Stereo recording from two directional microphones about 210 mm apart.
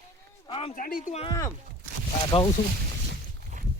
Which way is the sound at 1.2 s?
15° left (ahead or behind).